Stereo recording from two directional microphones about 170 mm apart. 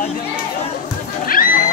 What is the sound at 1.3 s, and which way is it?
Horse, 55° left (ahead or behind).